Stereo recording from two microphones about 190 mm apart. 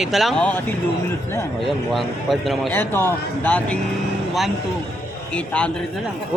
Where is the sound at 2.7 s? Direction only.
10° left (ahead or behind).